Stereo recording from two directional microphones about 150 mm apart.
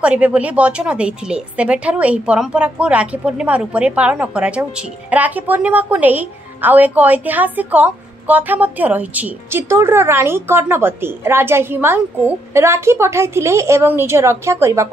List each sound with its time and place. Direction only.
0.0 s a woman's voice: 10° right (ahead or behind)